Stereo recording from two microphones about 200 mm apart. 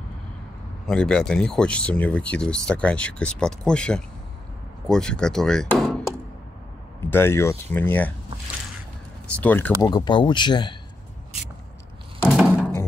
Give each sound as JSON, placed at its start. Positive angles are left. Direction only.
{"t": 0.8, "sound": "speech", "side_deg": 5}
{"t": 7.1, "sound": "speech", "side_deg": 10}
{"t": 9.3, "sound": "speech", "side_deg": 10}
{"t": 9.8, "sound": "speech", "side_deg": 20}
{"t": 12.3, "sound": "thunk", "side_deg": -5}